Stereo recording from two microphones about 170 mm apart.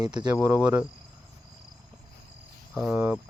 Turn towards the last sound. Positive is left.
turn(degrees=-10)  # may be behind; listen again after turning